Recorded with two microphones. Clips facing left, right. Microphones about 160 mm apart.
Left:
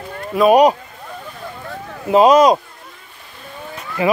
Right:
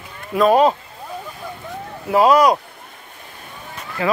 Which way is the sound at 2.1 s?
20° left (ahead or behind).